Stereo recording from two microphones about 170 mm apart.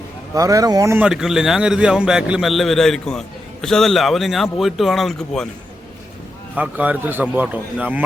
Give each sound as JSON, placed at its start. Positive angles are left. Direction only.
{"t": 0.3, "sound": "speech", "side_deg": -20}
{"t": 0.9, "sound": "a man's voice", "side_deg": -5}
{"t": 6.6, "sound": "a man's voice", "side_deg": -10}